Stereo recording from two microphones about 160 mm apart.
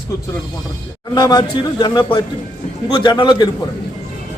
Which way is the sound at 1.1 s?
25° left (ahead or behind).